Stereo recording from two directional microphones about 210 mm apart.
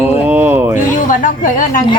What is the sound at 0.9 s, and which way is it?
Speech, 40° left (ahead or behind).